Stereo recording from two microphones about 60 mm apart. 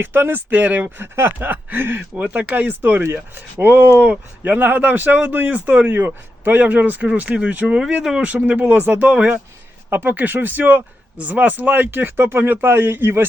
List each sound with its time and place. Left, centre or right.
0.0 s speech: right
7.8 s speech: centre
9.9 s speech: right